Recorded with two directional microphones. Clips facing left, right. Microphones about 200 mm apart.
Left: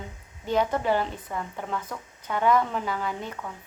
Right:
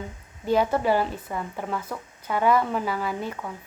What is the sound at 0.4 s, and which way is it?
Speech, 10° right (ahead or behind).